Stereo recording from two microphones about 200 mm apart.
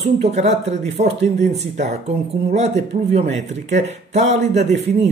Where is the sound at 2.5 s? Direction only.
35° right (ahead or behind).